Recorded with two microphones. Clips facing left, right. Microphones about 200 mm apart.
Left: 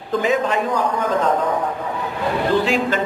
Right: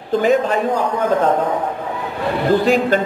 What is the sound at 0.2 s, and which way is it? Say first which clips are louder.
Speech: right 4 dB; 50° right (ahead or behind).